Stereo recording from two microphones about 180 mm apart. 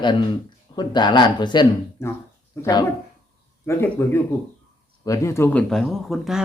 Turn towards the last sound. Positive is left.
turn(degrees=0)  # may be behind; listen again after turning